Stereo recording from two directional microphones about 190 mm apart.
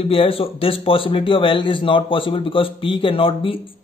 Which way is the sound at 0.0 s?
30° left (ahead or behind).